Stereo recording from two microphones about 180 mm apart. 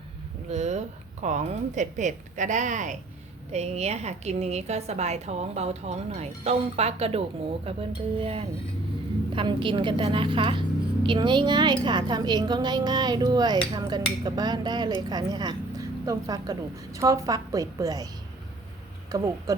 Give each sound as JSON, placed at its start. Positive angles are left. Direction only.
{"t": 0.5, "sound": "a woman's voice", "side_deg": -40}
{"t": 19.1, "sound": "speech", "side_deg": -20}